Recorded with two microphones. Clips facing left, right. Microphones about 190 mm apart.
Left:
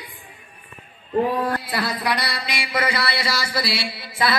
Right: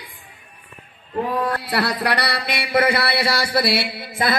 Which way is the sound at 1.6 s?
70° right (ahead or behind).